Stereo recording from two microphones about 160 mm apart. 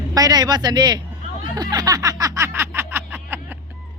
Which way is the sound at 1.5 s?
25° right (ahead or behind).